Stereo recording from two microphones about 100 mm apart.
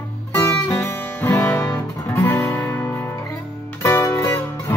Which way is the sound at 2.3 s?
30° left (ahead or behind).